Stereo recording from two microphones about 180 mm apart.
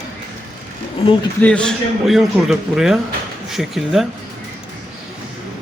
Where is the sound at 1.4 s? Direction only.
5° left (ahead or behind).